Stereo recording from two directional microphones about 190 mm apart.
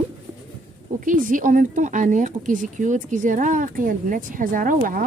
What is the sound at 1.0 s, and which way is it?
Speech, 45° right (ahead or behind).